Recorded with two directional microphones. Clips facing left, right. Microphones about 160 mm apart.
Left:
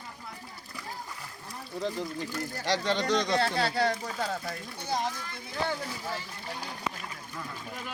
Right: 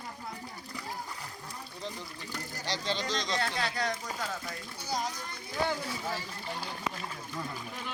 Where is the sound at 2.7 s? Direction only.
70° left (ahead or behind).